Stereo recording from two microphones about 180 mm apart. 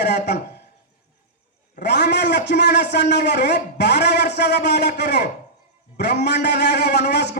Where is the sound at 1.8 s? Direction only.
70° left (ahead or behind).